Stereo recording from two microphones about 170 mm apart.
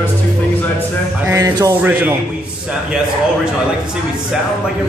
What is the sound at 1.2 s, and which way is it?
Music, 20° right (ahead or behind).